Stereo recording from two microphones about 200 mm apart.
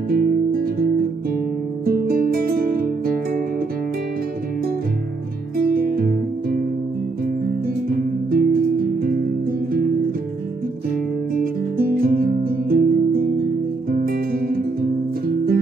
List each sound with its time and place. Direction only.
0.1 s music: 45° right (ahead or behind)
5.6 s music: 45° right (ahead or behind)
8.0 s music: 45° right (ahead or behind)
11.3 s music: 45° right (ahead or behind)